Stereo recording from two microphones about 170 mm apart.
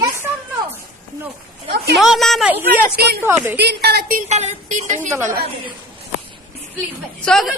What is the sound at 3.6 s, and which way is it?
A woman's voice, 75° right (ahead or behind).